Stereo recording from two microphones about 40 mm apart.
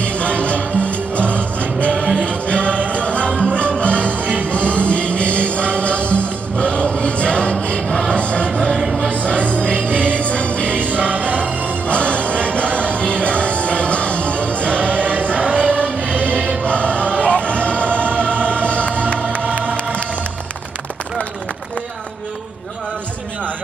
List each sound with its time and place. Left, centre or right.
0.0 s music: left
6.5 s choir: left
8.1 s music: left
10.9 s music: right
11.9 s music: left
14.9 s music: right
15.5 s music: left
19.4 s music: right